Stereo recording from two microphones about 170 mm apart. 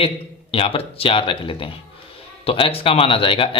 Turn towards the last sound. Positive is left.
turn(degrees=30)  # may be behind; listen again after turning